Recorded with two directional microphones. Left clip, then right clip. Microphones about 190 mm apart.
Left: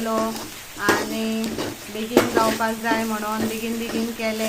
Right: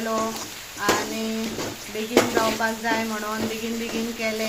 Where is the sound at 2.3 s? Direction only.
20° left (ahead or behind).